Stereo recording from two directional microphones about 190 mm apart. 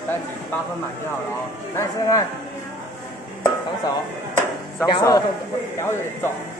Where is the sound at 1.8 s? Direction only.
20° left (ahead or behind).